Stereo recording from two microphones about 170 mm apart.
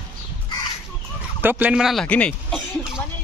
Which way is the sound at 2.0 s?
5° left (ahead or behind).